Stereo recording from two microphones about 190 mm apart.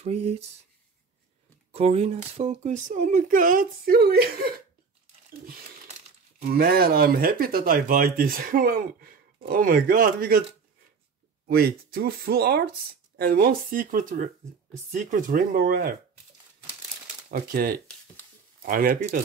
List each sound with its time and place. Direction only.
0.0 s speech: 35° right (ahead or behind)
1.7 s speech: 35° right (ahead or behind); by 4.5 s 50° right (ahead or behind)
6.5 s speech: 55° right (ahead or behind)
11.4 s speech: 55° right (ahead or behind)
17.3 s speech: 50° right (ahead or behind)